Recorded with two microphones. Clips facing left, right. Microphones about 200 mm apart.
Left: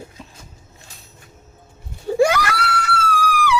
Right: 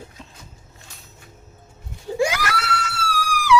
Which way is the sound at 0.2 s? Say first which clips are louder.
Left 2 dB; 10° left (ahead or behind).